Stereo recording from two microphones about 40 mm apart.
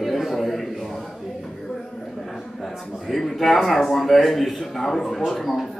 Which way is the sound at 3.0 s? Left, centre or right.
Centre.